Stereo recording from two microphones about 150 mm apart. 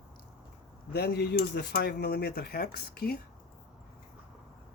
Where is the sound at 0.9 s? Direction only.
90° left.